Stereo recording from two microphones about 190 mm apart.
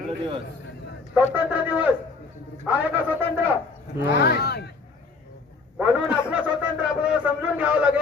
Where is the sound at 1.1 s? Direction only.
10° right (ahead or behind).